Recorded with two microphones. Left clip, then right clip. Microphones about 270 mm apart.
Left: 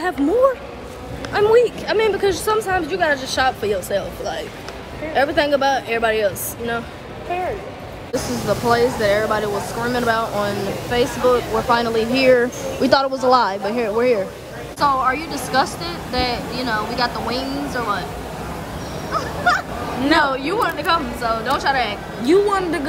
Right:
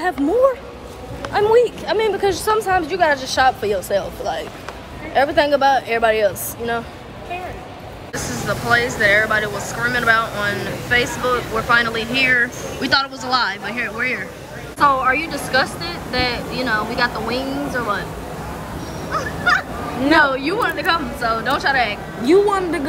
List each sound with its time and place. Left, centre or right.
0.0 s speech: centre
8.1 s speech: centre
19.1 s speech: centre